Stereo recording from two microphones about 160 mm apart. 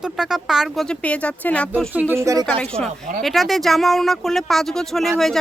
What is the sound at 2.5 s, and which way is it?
Speech, 5° left (ahead or behind).